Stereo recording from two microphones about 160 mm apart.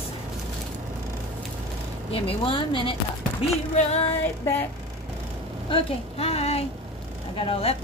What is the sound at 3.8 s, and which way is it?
Female singing, 40° left (ahead or behind).